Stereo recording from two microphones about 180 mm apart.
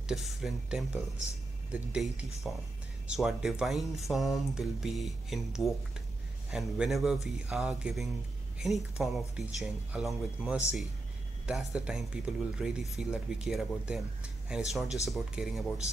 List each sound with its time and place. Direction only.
0.0 s speech: centre (ahead or behind)